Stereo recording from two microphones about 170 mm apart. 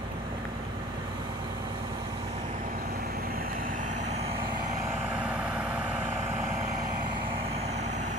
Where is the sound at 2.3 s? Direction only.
45° right (ahead or behind).